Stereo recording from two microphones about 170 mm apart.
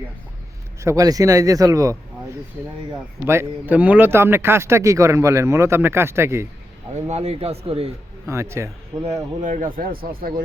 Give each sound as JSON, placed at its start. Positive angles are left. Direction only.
{"t": 0.8, "sound": "a man's voice", "side_deg": -20}
{"t": 3.2, "sound": "speech", "side_deg": -10}
{"t": 6.9, "sound": "speech", "side_deg": -40}
{"t": 8.3, "sound": "speech", "side_deg": -15}
{"t": 9.4, "sound": "a man's voice", "side_deg": -50}